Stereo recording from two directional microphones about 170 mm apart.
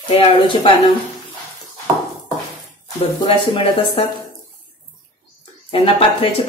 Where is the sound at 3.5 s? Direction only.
30° left (ahead or behind).